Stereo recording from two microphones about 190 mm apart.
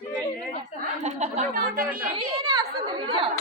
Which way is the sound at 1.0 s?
35° right (ahead or behind).